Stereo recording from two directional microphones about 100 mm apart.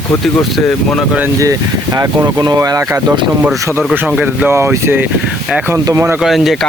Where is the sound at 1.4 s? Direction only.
35° right (ahead or behind).